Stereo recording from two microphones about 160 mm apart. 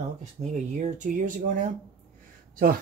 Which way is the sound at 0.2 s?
45° right (ahead or behind).